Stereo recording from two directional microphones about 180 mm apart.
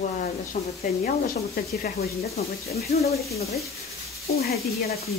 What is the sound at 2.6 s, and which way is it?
Speech, 35° left (ahead or behind).